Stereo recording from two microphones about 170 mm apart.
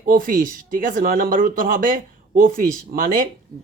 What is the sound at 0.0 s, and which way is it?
Speech, 55° right (ahead or behind).